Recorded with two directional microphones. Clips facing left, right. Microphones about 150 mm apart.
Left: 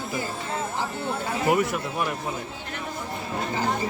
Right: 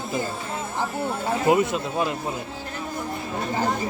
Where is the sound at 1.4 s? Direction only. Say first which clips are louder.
Right 2 dB; 20° right (ahead or behind).